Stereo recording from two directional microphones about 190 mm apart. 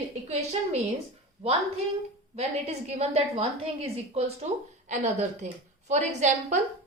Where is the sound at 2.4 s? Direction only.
35° right (ahead or behind).